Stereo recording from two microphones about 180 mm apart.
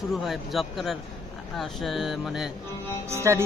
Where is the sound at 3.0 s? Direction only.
15° right (ahead or behind).